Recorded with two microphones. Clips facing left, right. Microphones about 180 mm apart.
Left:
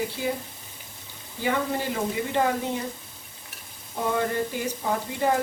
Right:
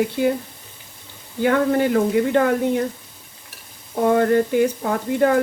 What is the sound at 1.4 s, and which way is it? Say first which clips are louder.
Speech: right 9 dB; 60° right (ahead or behind).